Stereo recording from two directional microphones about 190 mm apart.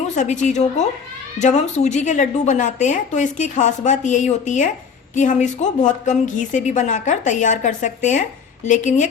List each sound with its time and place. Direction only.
0.2 s a woman's voice: 40° left (ahead or behind)